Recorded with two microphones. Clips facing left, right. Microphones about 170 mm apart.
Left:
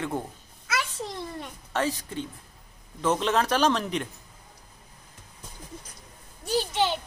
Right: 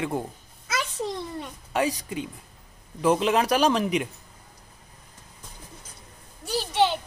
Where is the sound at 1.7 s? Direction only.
15° right (ahead or behind).